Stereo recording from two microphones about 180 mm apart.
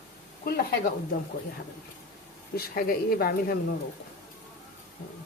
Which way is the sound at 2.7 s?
55° left (ahead or behind).